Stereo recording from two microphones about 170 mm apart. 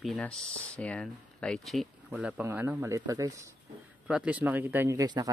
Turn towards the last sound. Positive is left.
turn(degrees=-20)  # may be behind; listen again after turning